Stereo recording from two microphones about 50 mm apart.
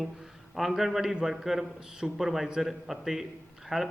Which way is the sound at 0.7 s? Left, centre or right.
Centre.